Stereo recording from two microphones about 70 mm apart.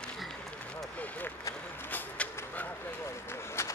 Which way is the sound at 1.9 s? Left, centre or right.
Left.